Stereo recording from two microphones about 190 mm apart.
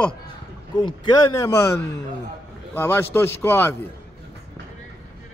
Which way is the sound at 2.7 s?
10° left (ahead or behind).